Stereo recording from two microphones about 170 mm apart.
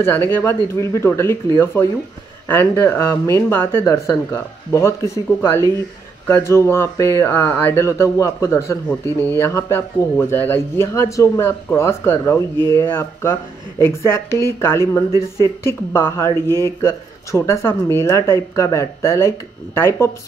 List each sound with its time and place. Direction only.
0.0 s speech: 15° left (ahead or behind)